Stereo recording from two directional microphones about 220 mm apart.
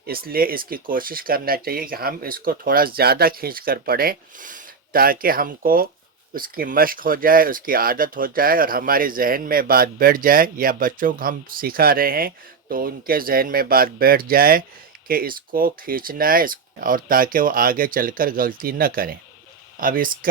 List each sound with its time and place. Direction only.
0.0 s speech: 45° right (ahead or behind)